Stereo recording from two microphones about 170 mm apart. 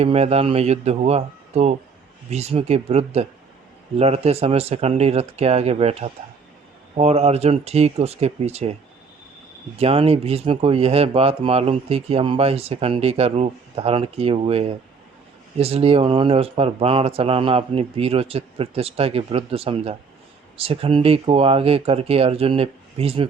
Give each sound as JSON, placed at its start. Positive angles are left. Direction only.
{"t": 0.0, "sound": "speech", "side_deg": -40}
{"t": 9.7, "sound": "speech", "side_deg": -35}